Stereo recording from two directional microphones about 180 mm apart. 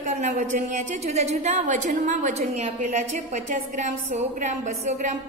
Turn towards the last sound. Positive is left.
turn(degrees=-45)  # may be behind; listen again after turning